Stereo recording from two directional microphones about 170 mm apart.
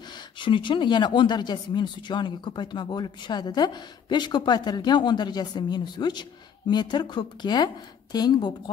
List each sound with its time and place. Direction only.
0.1 s speech: 30° left (ahead or behind)